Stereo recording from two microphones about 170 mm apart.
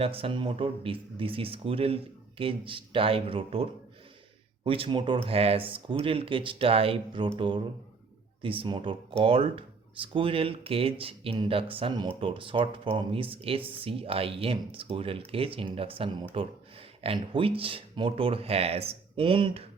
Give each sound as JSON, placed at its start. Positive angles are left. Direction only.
{"t": 0.0, "sound": "speech", "side_deg": -35}